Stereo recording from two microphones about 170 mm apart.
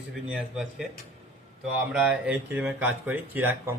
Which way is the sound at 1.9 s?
5° right (ahead or behind).